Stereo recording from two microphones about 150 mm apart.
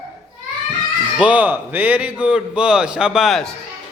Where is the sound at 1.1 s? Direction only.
10° right (ahead or behind).